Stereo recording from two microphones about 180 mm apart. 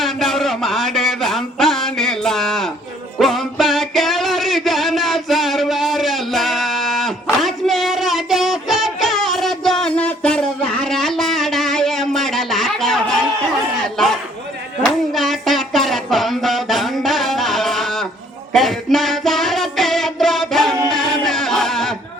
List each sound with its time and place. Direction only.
0.0 s music: centre (ahead or behind)
10.8 s a sound: centre (ahead or behind)
14.8 s music: centre (ahead or behind)